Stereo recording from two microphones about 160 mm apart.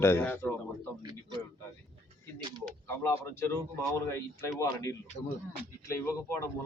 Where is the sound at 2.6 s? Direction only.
15° left (ahead or behind).